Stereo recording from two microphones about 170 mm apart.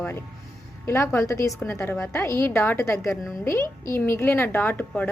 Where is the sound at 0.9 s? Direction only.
15° left (ahead or behind).